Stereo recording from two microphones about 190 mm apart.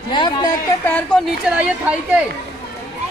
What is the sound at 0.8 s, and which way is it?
A woman's voice, 5° left (ahead or behind).